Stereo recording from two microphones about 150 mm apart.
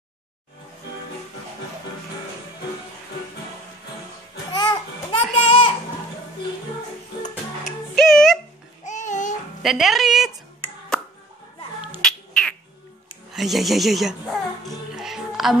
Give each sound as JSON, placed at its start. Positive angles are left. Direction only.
{"t": 4.5, "sound": "music", "side_deg": 25}
{"t": 5.1, "sound": "a sound", "side_deg": 35}
{"t": 7.9, "sound": "a sound", "side_deg": 0}
{"t": 8.8, "sound": "babbling", "side_deg": 55}
{"t": 9.6, "sound": "speech", "side_deg": 0}
{"t": 12.0, "sound": "squawk", "side_deg": 5}
{"t": 13.3, "sound": "music", "side_deg": 0}